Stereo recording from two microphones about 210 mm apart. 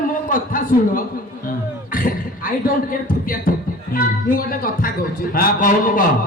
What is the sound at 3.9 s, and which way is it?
Speech, 45° left (ahead or behind).